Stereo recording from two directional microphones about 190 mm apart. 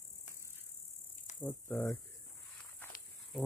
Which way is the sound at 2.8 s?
10° left (ahead or behind).